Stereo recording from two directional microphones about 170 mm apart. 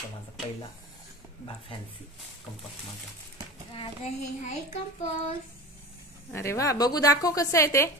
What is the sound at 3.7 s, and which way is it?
Child singing, 40° left (ahead or behind).